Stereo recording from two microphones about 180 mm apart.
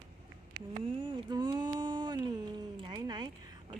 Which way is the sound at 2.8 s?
25° right (ahead or behind).